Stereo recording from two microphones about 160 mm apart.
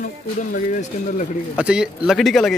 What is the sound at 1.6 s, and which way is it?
Speech, 5° right (ahead or behind).